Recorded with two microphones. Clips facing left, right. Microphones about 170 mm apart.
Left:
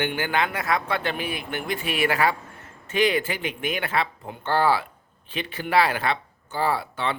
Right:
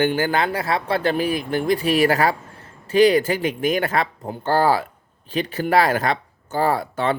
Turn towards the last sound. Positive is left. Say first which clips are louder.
# right 5 dB
turn(degrees=-45)  # may be behind; listen again after turning